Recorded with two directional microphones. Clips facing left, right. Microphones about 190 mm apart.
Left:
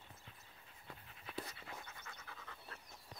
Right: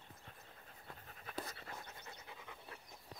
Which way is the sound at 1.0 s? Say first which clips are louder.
Right 1 dB; 45° right (ahead or behind).